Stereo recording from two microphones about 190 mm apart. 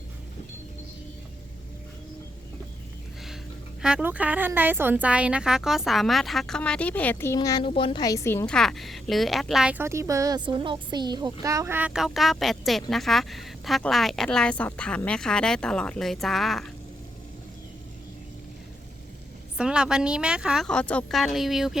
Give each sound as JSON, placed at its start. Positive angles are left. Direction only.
{"t": 3.8, "sound": "a woman's voice", "side_deg": -5}
{"t": 19.5, "sound": "a woman's voice", "side_deg": -5}